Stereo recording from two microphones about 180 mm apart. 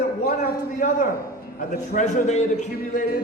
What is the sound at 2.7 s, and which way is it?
Speech, 55° left (ahead or behind).